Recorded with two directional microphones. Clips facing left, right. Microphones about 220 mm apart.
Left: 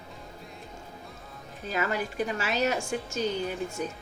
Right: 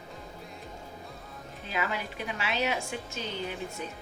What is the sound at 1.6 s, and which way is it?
A woman's voice, 45° left (ahead or behind).